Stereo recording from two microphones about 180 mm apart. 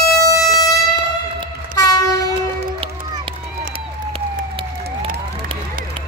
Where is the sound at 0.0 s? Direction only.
20° left (ahead or behind).